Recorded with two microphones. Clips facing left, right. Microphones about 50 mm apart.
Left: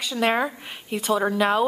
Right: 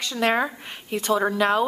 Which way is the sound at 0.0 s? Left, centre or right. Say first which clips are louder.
Even; centre.